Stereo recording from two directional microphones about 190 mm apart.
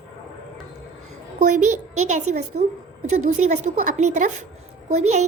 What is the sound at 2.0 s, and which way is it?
A woman's voice, 40° right (ahead or behind).